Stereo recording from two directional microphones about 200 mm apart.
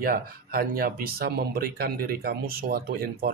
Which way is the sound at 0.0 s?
45° right (ahead or behind).